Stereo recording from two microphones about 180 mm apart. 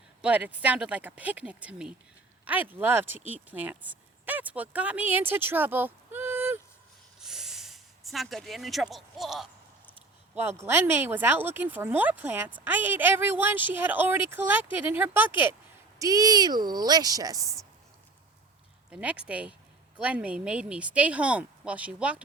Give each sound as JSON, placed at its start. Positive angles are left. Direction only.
{"t": 0.2, "sound": "speech", "side_deg": -10}
{"t": 7.2, "sound": "a sound", "side_deg": -5}
{"t": 10.3, "sound": "speech", "side_deg": -15}
{"t": 18.9, "sound": "speech", "side_deg": -5}